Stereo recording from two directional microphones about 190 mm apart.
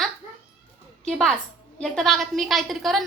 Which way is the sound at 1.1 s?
Centre (ahead or behind).